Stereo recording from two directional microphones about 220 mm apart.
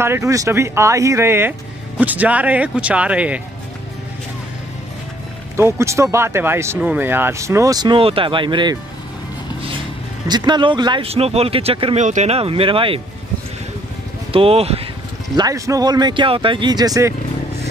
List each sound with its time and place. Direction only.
0.0 s speech: 10° right (ahead or behind)
5.6 s speech: 10° right (ahead or behind)
10.2 s speech: 20° right (ahead or behind)
14.3 s speech: 25° right (ahead or behind)
15.3 s speech: 15° right (ahead or behind)